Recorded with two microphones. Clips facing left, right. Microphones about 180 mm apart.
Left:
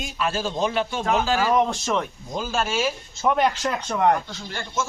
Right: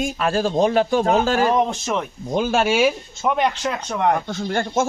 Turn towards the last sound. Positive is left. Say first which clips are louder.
# right 9 dB
turn(degrees=-55)  # may be behind; listen again after turning